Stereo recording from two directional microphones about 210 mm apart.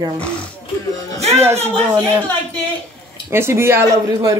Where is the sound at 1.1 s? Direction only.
30° right (ahead or behind).